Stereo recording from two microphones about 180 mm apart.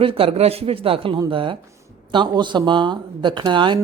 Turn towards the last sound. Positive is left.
turn(degrees=-25)  # may be behind; listen again after turning